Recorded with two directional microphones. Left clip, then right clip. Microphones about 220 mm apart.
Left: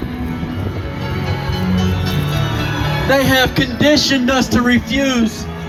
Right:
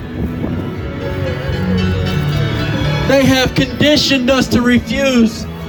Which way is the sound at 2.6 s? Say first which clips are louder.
Right 2 dB; 15° right (ahead or behind).